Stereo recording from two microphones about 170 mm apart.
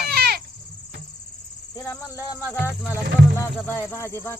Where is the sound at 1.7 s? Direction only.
15° left (ahead or behind).